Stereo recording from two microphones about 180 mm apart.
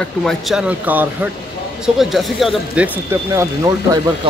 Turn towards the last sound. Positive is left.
turn(degrees=-15)  # may be behind; listen again after turning